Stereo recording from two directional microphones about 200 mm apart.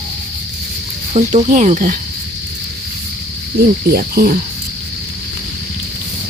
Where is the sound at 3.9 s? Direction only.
45° right (ahead or behind).